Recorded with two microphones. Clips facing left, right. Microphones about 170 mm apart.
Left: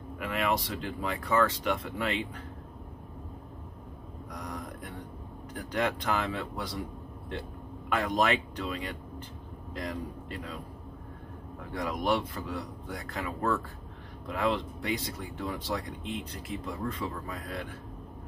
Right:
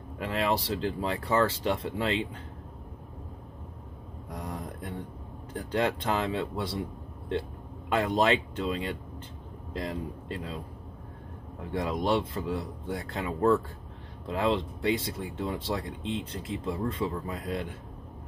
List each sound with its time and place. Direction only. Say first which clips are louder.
0.2 s speech: right 2 dB; 30° right (ahead or behind)
4.3 s a sound: right 2 dB; 25° right (ahead or behind)
5.5 s speech: right 3 dB; 30° right (ahead or behind)
7.9 s speech: right 3 dB; 25° right (ahead or behind)
11.7 s speech: right 2 dB; 25° right (ahead or behind)